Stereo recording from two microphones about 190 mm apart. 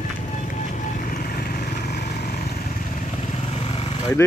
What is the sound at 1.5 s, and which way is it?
Vehicle, 50° left (ahead or behind).